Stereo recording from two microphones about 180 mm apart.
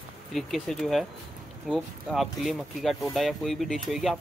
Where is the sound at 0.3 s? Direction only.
Centre (ahead or behind).